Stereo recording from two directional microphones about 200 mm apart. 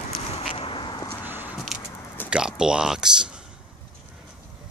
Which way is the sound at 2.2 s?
5° right (ahead or behind).